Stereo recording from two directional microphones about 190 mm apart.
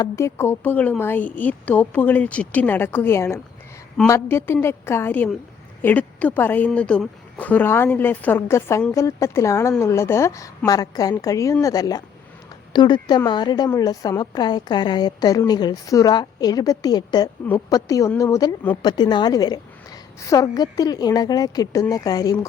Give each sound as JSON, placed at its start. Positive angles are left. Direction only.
{"t": 0.0, "sound": "a woman's voice", "side_deg": 15}